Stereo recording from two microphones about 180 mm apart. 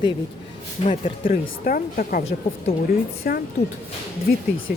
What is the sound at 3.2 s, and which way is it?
Speech, 55° left (ahead or behind).